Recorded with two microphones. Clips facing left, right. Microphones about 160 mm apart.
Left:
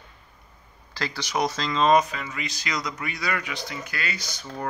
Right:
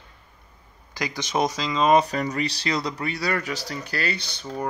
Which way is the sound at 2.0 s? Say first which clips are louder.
Right 8 dB; 40° right (ahead or behind).